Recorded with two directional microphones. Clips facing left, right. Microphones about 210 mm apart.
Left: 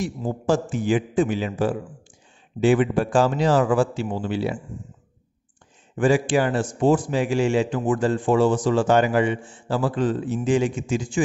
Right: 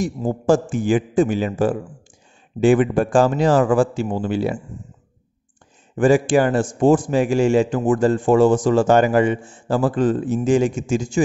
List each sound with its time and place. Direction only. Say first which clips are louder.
0.0 s a man's voice: right 4 dB; 45° right (ahead or behind)
5.9 s a man's voice: right 4 dB; 45° right (ahead or behind)